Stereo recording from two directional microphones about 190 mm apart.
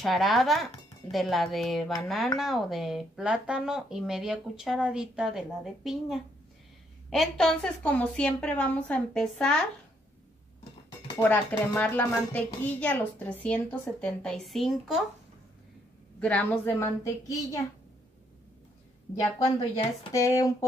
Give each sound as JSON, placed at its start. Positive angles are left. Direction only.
{"t": 0.0, "sound": "a woman's voice", "side_deg": 0}
{"t": 11.2, "sound": "a woman's voice", "side_deg": 10}
{"t": 16.2, "sound": "speech", "side_deg": 10}
{"t": 19.7, "sound": "speech", "side_deg": 25}